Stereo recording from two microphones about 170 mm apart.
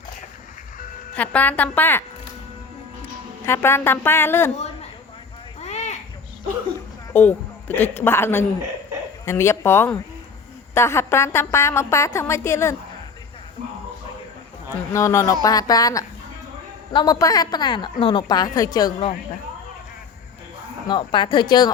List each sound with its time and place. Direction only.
1.1 s a woman's voice: 10° left (ahead or behind)
3.4 s a woman's voice: 15° left (ahead or behind)
5.5 s a sound: 40° left (ahead or behind)
7.1 s a woman's voice: 10° left (ahead or behind)
14.9 s speech: 15° left (ahead or behind)
20.8 s speech: 30° left (ahead or behind)